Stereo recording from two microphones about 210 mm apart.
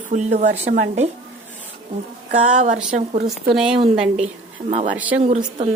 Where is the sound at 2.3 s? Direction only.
35° right (ahead or behind).